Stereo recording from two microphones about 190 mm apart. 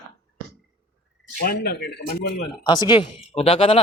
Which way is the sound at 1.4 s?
55° left (ahead or behind).